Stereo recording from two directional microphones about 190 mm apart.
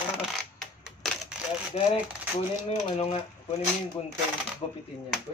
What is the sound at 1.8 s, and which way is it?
Speech, 35° left (ahead or behind).